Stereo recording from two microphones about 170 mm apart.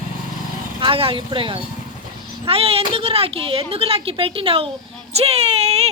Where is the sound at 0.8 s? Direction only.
35° right (ahead or behind).